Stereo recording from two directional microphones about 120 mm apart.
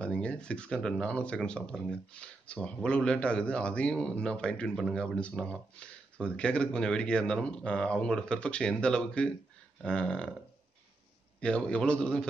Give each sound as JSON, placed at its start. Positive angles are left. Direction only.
{"t": 0.0, "sound": "speech", "side_deg": 10}
{"t": 11.4, "sound": "speech", "side_deg": 10}